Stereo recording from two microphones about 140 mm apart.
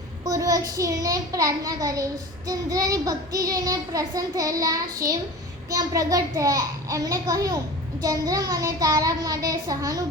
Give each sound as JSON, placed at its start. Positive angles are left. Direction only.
{"t": 0.3, "sound": "child singing", "side_deg": -25}